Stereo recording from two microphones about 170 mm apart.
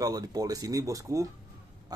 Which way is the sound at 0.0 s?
20° right (ahead or behind).